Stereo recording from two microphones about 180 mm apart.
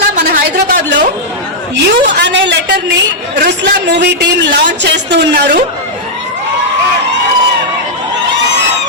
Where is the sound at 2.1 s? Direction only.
75° right (ahead or behind).